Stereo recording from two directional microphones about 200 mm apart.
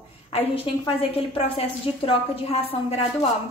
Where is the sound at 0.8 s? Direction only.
25° left (ahead or behind).